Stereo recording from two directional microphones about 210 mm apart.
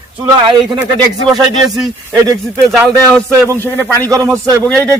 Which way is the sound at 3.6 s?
10° left (ahead or behind).